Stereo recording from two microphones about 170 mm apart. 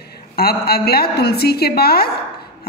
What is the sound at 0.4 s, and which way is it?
Speech, 65° left (ahead or behind).